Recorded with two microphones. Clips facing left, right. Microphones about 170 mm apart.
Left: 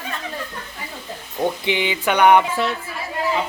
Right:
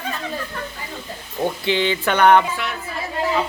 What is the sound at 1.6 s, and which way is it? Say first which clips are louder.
Speech: right 1 dB; 15° left (ahead or behind).